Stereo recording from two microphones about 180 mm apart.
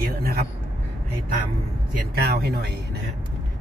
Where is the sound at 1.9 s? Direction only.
60° right (ahead or behind).